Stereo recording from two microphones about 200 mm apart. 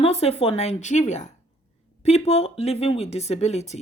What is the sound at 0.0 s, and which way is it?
Speech, 30° left (ahead or behind).